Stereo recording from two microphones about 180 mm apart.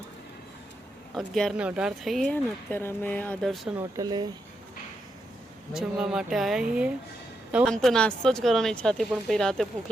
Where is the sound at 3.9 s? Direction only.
20° right (ahead or behind).